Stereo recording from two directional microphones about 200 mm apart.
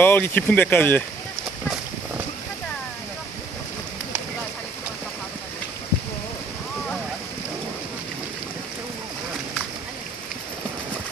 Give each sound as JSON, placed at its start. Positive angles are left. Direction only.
{"t": 0.0, "sound": "speech", "side_deg": 10}